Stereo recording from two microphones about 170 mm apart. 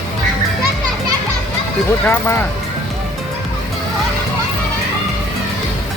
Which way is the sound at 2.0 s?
10° left (ahead or behind).